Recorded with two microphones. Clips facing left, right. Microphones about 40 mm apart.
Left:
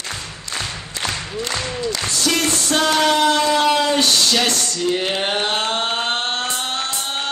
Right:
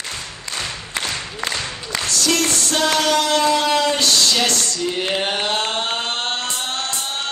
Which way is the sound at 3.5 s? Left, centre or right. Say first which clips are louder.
Left 1 dB; centre.